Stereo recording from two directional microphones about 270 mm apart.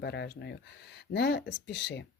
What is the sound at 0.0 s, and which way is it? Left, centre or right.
Speech, left.